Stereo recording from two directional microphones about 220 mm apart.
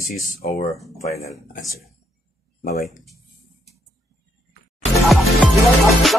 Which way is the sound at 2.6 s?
45° left (ahead or behind).